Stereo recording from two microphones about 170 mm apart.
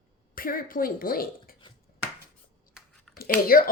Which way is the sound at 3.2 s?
55° left (ahead or behind).